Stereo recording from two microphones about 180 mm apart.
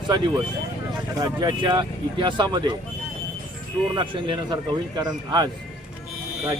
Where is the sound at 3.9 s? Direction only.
25° right (ahead or behind).